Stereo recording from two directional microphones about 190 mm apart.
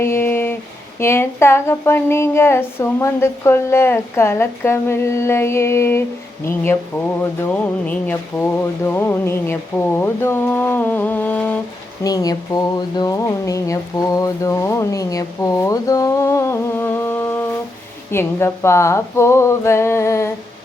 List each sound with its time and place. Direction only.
0.0 s a sound: 10° left (ahead or behind)
0.9 s speech: 15° left (ahead or behind)
12.0 s speech: 20° left (ahead or behind)